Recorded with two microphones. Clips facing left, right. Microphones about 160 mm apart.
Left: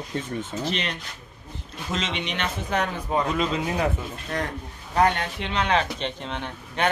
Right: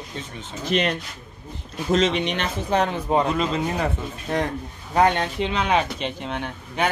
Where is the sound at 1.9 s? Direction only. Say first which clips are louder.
Right 9 dB; 40° right (ahead or behind).